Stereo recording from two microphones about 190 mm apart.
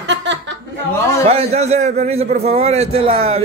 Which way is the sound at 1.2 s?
30° right (ahead or behind).